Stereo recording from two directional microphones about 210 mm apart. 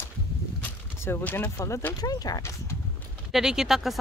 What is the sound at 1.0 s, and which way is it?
Speech, 10° left (ahead or behind).